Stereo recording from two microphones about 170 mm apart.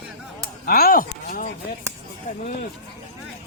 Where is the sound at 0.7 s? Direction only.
60° left (ahead or behind).